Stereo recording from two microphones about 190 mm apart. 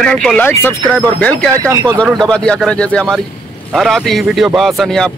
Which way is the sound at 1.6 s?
15° right (ahead or behind).